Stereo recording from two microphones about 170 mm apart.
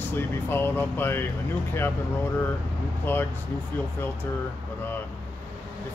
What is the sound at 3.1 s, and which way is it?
Speech, 10° left (ahead or behind).